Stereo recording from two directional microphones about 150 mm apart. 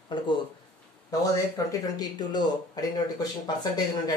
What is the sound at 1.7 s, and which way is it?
Speech, 25° left (ahead or behind).